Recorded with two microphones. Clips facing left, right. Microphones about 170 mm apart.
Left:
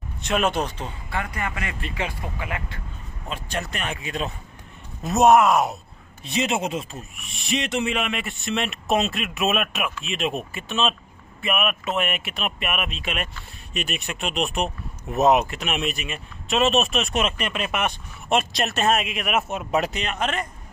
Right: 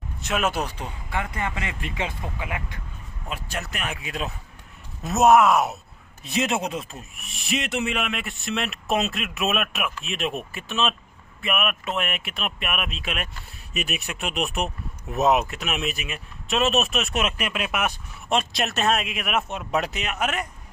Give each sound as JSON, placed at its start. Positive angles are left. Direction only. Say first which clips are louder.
{"t": 0.2, "sound": "speech", "louder": "left 2 dB", "side_deg": -5}